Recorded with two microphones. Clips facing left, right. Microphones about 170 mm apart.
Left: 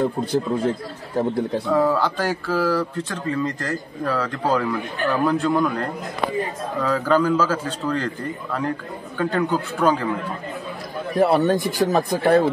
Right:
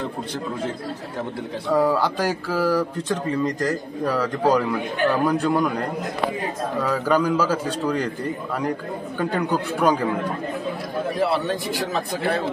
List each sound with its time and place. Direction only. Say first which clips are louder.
1.7 s speech: right 2 dB; 10° right (ahead or behind)
6.8 s speech: left 2 dB; 10° right (ahead or behind)
9.2 s speech: left 2 dB; 15° right (ahead or behind)
11.1 s a man's voice: left 7 dB; 45° left (ahead or behind)